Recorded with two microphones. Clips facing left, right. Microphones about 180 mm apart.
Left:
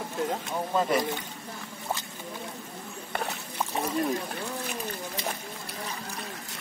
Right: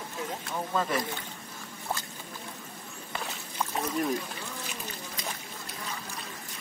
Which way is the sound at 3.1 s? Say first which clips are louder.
Left 5 dB; 60° left (ahead or behind).